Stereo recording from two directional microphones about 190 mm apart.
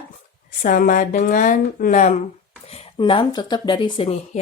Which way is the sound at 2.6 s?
30° left (ahead or behind).